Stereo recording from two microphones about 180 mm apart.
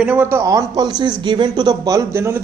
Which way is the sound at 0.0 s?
10° right (ahead or behind).